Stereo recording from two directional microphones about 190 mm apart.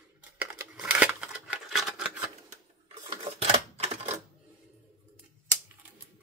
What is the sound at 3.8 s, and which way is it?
Typewriter, 35° right (ahead or behind).